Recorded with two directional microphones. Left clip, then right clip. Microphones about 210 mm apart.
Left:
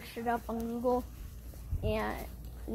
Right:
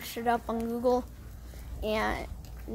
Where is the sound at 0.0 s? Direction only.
15° right (ahead or behind).